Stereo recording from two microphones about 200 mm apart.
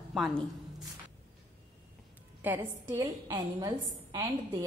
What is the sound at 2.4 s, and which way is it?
A woman's voice, 10° right (ahead or behind).